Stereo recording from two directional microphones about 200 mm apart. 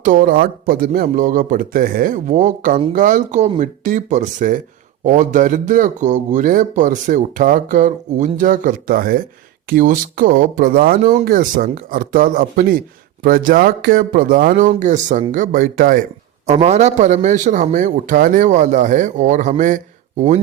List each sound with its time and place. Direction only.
0.0 s a man's voice: 45° right (ahead or behind)